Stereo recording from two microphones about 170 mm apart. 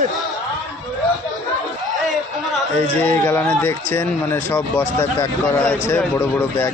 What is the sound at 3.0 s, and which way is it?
A man's voice, 10° left (ahead or behind).